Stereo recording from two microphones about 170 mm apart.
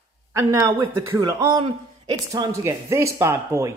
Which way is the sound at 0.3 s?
15° right (ahead or behind).